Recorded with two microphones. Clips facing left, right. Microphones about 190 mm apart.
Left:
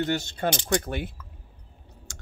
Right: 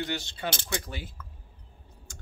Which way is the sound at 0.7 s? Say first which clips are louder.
Left 9 dB; 55° left (ahead or behind).